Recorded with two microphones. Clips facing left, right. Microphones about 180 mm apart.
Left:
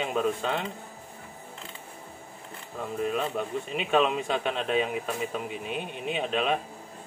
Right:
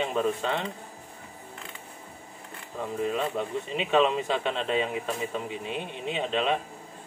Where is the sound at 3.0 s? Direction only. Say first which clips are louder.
Even; centre (ahead or behind).